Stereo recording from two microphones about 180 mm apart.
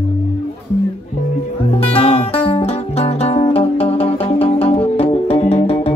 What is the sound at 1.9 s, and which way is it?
Music, 35° left (ahead or behind).